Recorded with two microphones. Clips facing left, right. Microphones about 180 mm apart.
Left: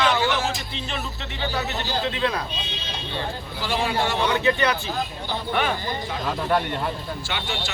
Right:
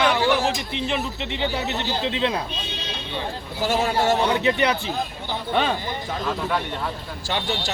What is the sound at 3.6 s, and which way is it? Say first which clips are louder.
Speech: right 3 dB; 45° right (ahead or behind).